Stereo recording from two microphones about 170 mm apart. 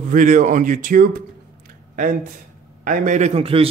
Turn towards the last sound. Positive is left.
turn(degrees=-35)  # may be behind; listen again after turning